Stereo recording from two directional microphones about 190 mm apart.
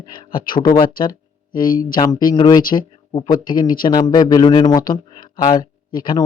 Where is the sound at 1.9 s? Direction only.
20° left (ahead or behind).